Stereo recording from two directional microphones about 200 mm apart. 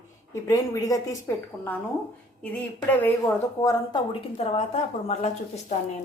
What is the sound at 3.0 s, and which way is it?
Speech, 15° left (ahead or behind).